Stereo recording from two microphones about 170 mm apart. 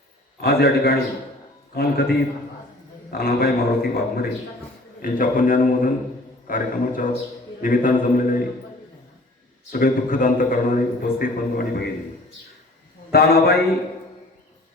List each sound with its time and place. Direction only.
0.4 s a man's voice: 65° left (ahead or behind)
9.7 s a man's voice: 55° left (ahead or behind)
13.1 s a man's voice: 65° left (ahead or behind)